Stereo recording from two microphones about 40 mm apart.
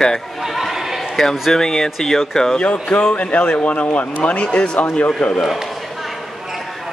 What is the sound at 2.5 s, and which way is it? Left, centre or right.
Speech, left.